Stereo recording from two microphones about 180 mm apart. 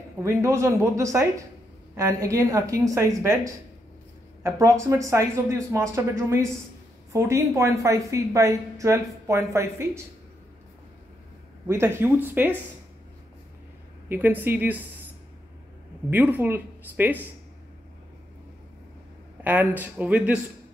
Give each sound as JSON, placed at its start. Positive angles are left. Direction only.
{"t": 0.2, "sound": "a woman's voice", "side_deg": -15}
{"t": 11.6, "sound": "a woman's voice", "side_deg": -15}
{"t": 14.0, "sound": "a woman's voice", "side_deg": -10}
{"t": 16.1, "sound": "a woman's voice", "side_deg": -10}
{"t": 19.4, "sound": "a woman's voice", "side_deg": -10}